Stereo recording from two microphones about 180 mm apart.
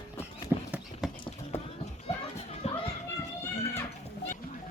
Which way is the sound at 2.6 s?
35° left (ahead or behind).